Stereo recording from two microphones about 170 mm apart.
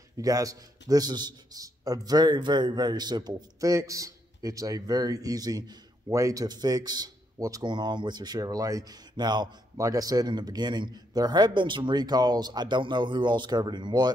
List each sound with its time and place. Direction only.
0.2 s a man's voice: 20° right (ahead or behind)